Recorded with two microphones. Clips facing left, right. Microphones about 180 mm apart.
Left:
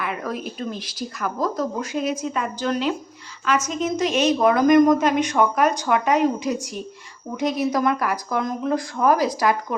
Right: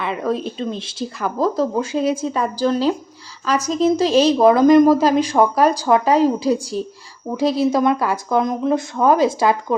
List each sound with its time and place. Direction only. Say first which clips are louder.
0.0 s a woman's voice: right 6 dB; 25° right (ahead or behind)